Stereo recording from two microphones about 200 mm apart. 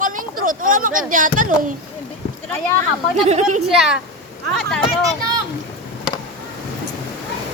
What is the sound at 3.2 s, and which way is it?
Speech, 35° right (ahead or behind).